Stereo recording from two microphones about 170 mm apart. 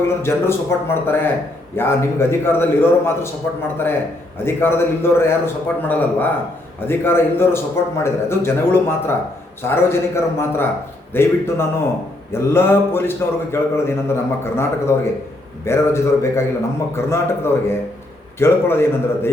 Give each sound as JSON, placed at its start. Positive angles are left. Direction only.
{"t": 0.2, "sound": "a man's voice", "side_deg": 15}
{"t": 4.4, "sound": "a man's voice", "side_deg": 15}